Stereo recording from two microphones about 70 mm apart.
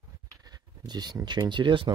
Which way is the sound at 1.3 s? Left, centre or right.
Right.